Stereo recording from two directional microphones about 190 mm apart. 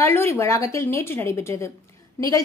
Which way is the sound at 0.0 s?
10° left (ahead or behind).